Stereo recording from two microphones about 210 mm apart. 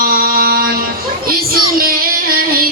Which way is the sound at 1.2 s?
45° right (ahead or behind).